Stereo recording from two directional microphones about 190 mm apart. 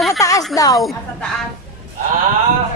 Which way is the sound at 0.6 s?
20° left (ahead or behind).